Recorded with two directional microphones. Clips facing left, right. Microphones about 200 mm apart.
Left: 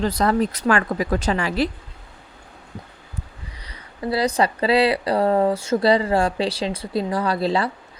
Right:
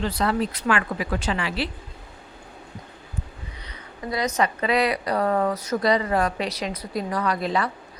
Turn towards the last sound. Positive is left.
turn(degrees=30)  # may be behind; listen again after turning